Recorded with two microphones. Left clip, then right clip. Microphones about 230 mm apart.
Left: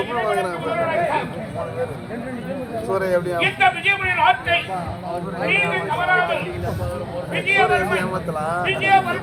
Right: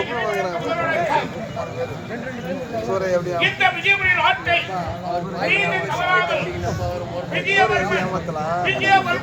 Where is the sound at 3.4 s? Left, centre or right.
Centre.